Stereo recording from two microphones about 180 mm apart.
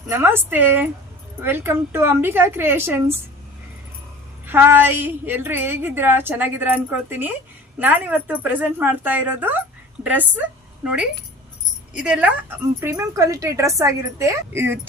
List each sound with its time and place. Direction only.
0.1 s a woman's voice: 10° right (ahead or behind)
4.4 s a woman's voice: 10° right (ahead or behind)
11.9 s a woman's voice: 5° right (ahead or behind)